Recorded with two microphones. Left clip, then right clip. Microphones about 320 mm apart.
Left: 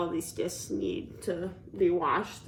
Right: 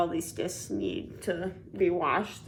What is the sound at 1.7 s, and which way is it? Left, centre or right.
Speech, centre.